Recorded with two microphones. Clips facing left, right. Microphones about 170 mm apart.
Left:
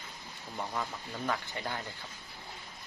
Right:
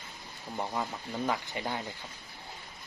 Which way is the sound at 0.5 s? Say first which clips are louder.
Right 3 dB; 20° right (ahead or behind).